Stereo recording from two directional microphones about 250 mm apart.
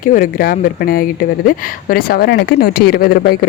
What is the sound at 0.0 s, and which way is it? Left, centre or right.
Speech, left.